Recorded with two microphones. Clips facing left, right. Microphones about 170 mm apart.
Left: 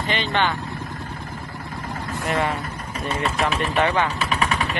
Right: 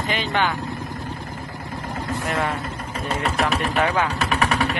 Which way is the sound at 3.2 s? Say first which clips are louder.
Even; 35° right (ahead or behind).